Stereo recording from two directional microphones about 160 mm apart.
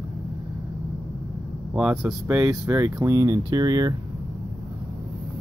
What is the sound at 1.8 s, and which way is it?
Speech, 5° right (ahead or behind).